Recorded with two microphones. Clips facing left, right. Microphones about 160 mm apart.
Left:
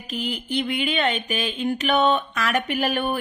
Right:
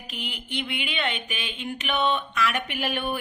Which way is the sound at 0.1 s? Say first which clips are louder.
Left 8 dB; 40° left (ahead or behind).